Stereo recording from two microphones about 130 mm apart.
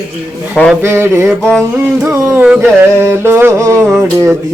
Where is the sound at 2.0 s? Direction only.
15° right (ahead or behind).